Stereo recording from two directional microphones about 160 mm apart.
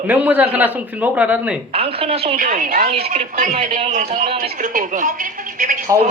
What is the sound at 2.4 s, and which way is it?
Speech, 55° right (ahead or behind).